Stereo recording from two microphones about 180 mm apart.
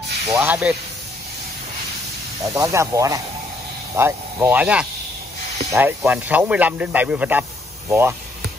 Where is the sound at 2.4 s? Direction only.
15° right (ahead or behind).